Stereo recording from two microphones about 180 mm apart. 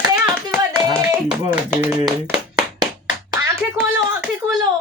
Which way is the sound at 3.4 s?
15° right (ahead or behind).